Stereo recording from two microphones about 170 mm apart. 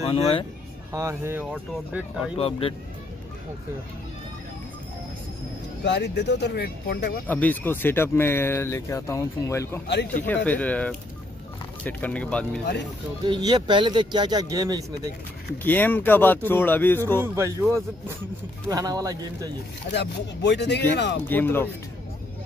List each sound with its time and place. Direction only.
0.1 s speech: 35° left (ahead or behind)
0.9 s speech: 15° right (ahead or behind)
2.3 s speech: 35° left (ahead or behind)
5.9 s speech: 90° left; by 7.2 s 65° left (ahead or behind)
7.2 s speech: 10° left (ahead or behind)
13.3 s speech: 25° right (ahead or behind)
15.6 s speech: 10° left (ahead or behind)
17.2 s speech: 15° right (ahead or behind)
19.9 s speech: 90° left
21.3 s speech: 10° left (ahead or behind)